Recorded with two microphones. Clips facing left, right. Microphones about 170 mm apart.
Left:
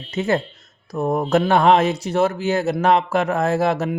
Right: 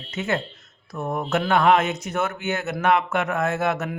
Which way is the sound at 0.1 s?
35° left (ahead or behind).